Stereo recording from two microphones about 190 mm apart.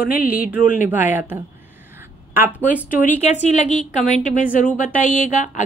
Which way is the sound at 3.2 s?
35° left (ahead or behind).